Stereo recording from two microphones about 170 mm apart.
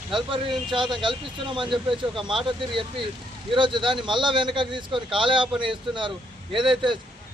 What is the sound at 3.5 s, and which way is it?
Speech, 30° right (ahead or behind).